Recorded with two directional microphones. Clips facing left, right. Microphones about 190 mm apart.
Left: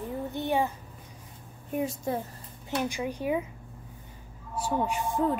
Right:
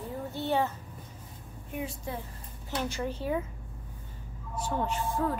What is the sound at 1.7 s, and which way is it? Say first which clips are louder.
Speech: left 7 dB; 40° left (ahead or behind).